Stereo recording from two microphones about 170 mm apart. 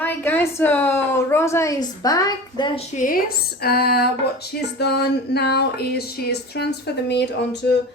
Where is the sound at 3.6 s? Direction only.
65° left (ahead or behind); by 7.3 s 90° left.